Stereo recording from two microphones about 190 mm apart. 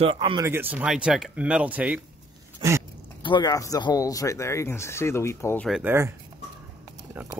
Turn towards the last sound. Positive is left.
turn(degrees=-10)  # may be behind; listen again after turning